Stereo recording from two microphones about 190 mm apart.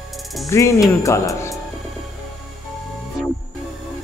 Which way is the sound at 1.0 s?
15° left (ahead or behind).